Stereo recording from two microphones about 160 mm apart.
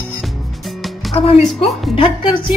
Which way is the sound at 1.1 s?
35° left (ahead or behind).